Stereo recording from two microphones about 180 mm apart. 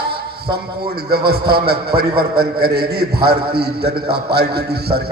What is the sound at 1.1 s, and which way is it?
A man's voice, 60° right (ahead or behind).